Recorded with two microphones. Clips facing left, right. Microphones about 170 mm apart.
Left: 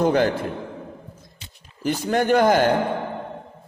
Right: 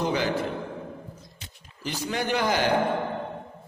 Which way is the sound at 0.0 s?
55° left (ahead or behind).